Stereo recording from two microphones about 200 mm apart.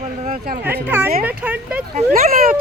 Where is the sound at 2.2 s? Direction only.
45° right (ahead or behind).